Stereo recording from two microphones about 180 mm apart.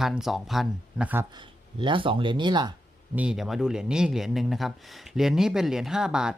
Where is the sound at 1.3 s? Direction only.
25° right (ahead or behind).